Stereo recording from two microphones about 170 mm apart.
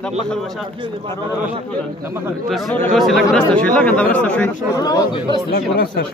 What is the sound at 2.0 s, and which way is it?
Speech, 15° right (ahead or behind).